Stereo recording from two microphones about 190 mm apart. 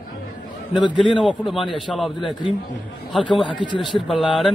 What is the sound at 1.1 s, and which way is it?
A man's voice, centre (ahead or behind).